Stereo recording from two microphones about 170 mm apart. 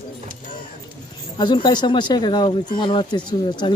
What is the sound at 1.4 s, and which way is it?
Speech, 25° left (ahead or behind).